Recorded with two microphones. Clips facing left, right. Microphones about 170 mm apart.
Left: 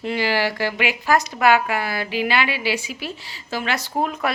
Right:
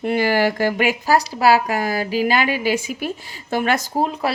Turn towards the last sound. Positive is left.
turn(degrees=-30)  # may be behind; listen again after turning